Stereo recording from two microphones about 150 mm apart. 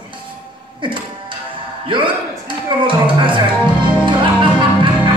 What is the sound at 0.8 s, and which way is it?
Music, 35° right (ahead or behind).